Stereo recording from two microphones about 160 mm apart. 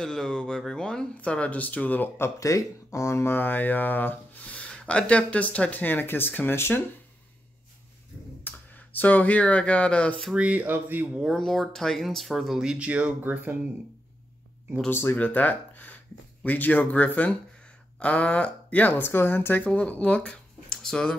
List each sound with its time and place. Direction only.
0.0 s speech: 5° left (ahead or behind)
8.5 s speech: 10° left (ahead or behind)
10.2 s speech: 5° right (ahead or behind)
11.2 s speech: centre (ahead or behind)
14.9 s speech: 15° left (ahead or behind)
20.7 s a sound: 5° left (ahead or behind)